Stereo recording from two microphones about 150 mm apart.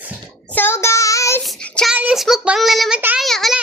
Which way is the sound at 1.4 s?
5° left (ahead or behind).